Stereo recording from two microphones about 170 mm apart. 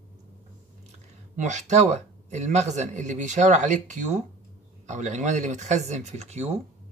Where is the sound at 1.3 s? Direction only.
45° right (ahead or behind).